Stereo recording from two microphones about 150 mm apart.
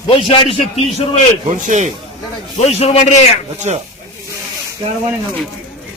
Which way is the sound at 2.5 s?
45° left (ahead or behind).